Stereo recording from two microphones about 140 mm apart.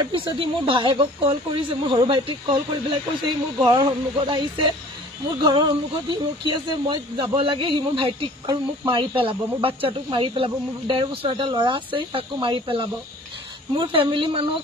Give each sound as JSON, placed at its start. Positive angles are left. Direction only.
{"t": 0.0, "sound": "speech", "side_deg": -35}
{"t": 3.6, "sound": "speech", "side_deg": -35}